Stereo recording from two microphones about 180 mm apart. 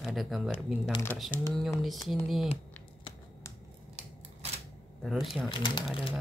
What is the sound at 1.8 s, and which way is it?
Speech, centre (ahead or behind).